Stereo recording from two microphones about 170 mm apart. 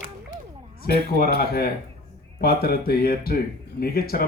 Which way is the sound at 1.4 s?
65° left (ahead or behind).